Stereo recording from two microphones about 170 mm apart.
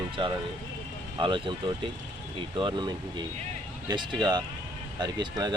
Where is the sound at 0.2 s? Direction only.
30° right (ahead or behind).